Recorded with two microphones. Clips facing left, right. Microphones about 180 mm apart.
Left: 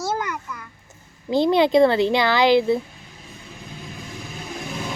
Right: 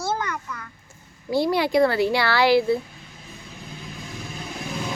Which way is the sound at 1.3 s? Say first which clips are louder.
Left 4 dB; 20° left (ahead or behind).